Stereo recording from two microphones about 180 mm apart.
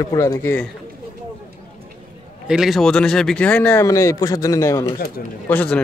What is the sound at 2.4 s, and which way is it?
Speech, 5° right (ahead or behind).